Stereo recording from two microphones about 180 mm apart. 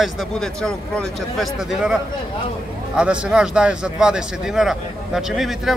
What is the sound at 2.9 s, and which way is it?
A man's voice, 5° right (ahead or behind).